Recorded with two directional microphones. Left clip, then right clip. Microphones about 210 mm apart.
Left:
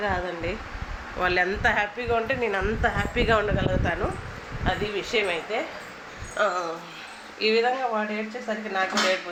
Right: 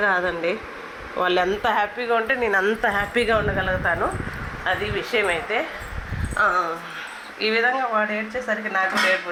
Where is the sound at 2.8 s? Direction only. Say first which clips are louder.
Right 4 dB; 30° right (ahead or behind).